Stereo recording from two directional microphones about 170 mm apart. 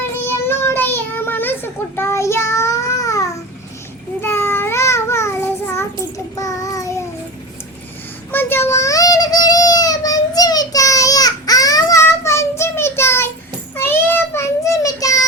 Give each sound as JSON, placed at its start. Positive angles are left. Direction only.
{"t": 0.3, "sound": "child singing", "side_deg": 15}
{"t": 4.2, "sound": "babbling", "side_deg": 15}
{"t": 6.3, "sound": "child singing", "side_deg": 20}
{"t": 8.3, "sound": "child singing", "side_deg": 10}